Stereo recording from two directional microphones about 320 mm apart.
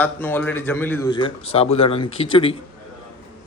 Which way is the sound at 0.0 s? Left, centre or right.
Centre.